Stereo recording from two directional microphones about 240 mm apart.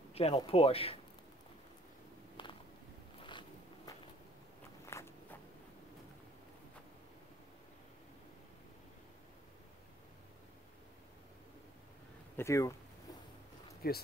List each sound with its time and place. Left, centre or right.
0.1 s speech: left
2.4 s a sound: left
4.8 s walk: centre
12.4 s speech: centre
13.8 s speech: left